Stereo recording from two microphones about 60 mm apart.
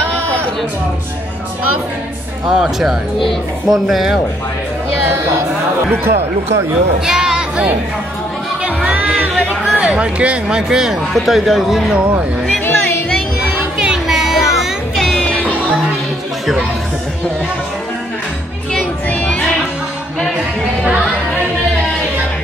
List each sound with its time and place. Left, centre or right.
2.5 s speech: centre
5.9 s speech: right
7.1 s sheep: centre
8.6 s music: right
9.7 s speech: centre
11.9 s speech: centre
13.7 s music: centre
15.0 s music: centre
19.0 s music: left